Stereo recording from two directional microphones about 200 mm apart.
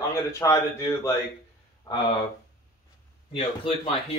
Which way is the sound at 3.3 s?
30° left (ahead or behind).